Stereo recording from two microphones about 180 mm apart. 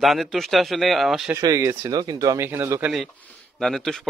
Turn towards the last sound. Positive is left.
turn(degrees=0)  # may be behind; listen again after turning